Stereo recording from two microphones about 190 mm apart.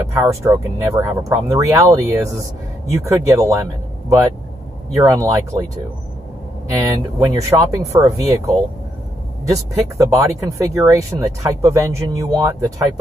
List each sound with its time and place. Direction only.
0.1 s speech: 15° right (ahead or behind)
5.0 s speech: 15° right (ahead or behind)
6.7 s speech: 15° right (ahead or behind)